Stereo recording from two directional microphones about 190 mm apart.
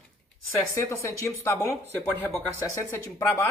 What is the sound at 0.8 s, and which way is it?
Speech, 15° left (ahead or behind).